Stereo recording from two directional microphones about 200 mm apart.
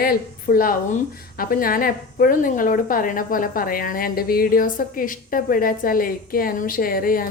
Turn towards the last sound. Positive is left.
turn(degrees=45)  # may be behind; listen again after turning